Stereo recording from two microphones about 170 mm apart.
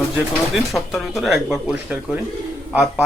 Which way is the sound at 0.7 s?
Centre (ahead or behind).